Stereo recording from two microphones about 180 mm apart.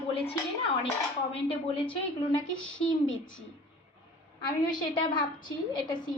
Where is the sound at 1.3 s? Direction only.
30° left (ahead or behind).